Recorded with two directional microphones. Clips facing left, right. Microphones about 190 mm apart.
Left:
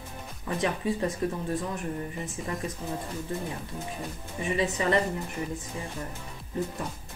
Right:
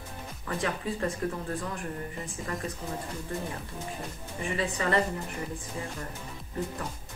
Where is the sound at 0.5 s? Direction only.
20° left (ahead or behind).